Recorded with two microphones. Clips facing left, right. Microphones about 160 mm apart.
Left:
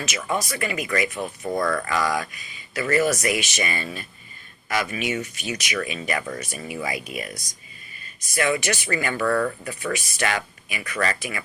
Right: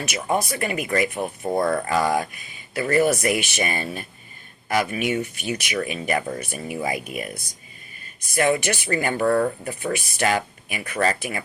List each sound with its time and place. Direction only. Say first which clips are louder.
0.2 s speech: right 3 dB; 50° right (ahead or behind)
1.5 s speech: right 3 dB; 30° right (ahead or behind)
2.0 s speech: right 3 dB; 50° right (ahead or behind)
5.7 s speech: right 3 dB; 40° right (ahead or behind)
9.2 s speech: right 3 dB; 30° right (ahead or behind)
9.6 s speech: right 2 dB; 55° right (ahead or behind)